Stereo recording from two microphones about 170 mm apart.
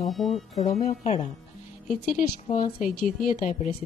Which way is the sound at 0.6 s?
40° left (ahead or behind).